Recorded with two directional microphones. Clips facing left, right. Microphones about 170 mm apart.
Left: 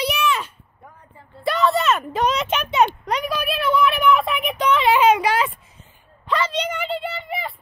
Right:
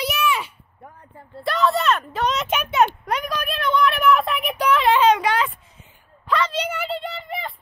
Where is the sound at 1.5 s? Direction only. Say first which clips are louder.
Left 1 dB; centre (ahead or behind).